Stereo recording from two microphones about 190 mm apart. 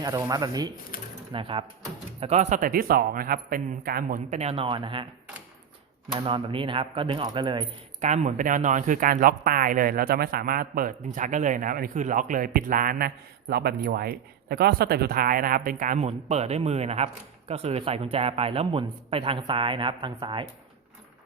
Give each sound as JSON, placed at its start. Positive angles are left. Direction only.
{"t": 0.0, "sound": "speech", "side_deg": -20}
{"t": 6.1, "sound": "speech", "side_deg": -25}
{"t": 8.0, "sound": "speech", "side_deg": -40}